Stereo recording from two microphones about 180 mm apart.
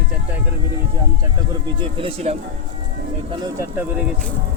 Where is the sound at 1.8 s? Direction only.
30° right (ahead or behind).